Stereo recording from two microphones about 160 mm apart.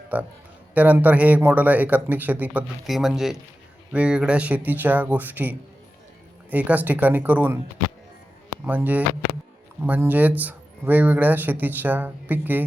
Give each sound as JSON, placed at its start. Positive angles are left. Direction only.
{"t": 0.1, "sound": "speech", "side_deg": -10}
{"t": 8.6, "sound": "speech", "side_deg": -10}